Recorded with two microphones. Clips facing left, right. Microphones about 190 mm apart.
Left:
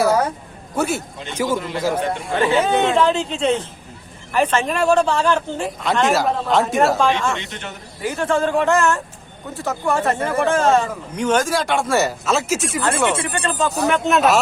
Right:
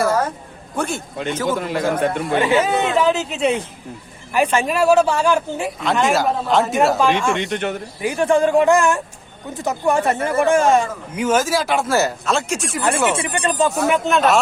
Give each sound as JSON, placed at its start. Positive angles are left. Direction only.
{"t": 0.8, "sound": "a man's voice", "side_deg": 5}
{"t": 2.4, "sound": "speech", "side_deg": -10}
{"t": 5.8, "sound": "speech", "side_deg": 0}
{"t": 7.1, "sound": "speech", "side_deg": -15}
{"t": 7.5, "sound": "speech", "side_deg": -60}
{"t": 8.0, "sound": "speech", "side_deg": -15}
{"t": 13.1, "sound": "speech", "side_deg": -15}
{"t": 13.8, "sound": "speech", "side_deg": 0}